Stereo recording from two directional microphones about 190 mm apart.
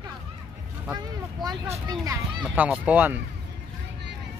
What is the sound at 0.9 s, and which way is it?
Speech, 20° right (ahead or behind).